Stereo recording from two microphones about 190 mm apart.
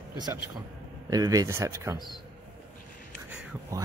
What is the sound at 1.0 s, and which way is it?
Speech, 20° right (ahead or behind).